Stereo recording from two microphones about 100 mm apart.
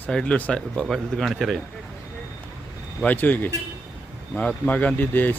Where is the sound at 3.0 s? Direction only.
15° left (ahead or behind).